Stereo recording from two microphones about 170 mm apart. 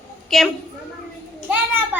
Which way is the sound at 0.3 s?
Centre (ahead or behind).